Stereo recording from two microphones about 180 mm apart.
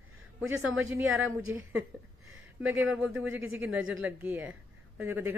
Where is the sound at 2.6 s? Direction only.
10° right (ahead or behind).